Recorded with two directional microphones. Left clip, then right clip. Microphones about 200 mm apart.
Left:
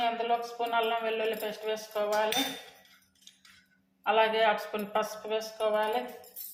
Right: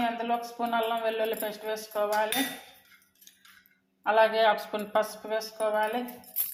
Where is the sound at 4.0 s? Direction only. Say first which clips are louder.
Right 3 dB; 25° right (ahead or behind).